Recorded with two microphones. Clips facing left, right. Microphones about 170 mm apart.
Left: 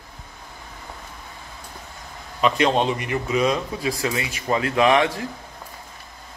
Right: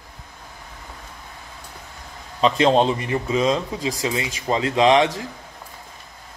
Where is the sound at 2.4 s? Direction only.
30° right (ahead or behind).